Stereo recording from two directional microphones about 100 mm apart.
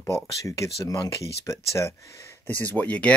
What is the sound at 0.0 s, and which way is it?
Speech, 30° left (ahead or behind).